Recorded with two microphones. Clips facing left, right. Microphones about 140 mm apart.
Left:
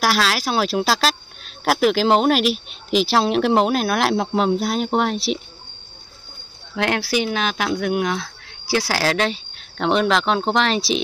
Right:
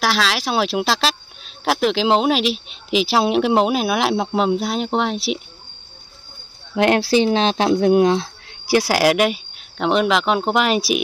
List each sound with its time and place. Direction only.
0.0 s speech: 5° left (ahead or behind)
6.7 s speech: 20° right (ahead or behind)
9.8 s speech: 5° right (ahead or behind)